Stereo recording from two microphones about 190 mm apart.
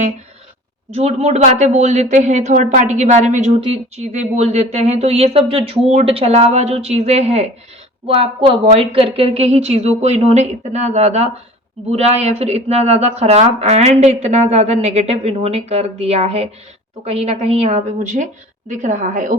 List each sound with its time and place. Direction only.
0.9 s speech: 35° right (ahead or behind)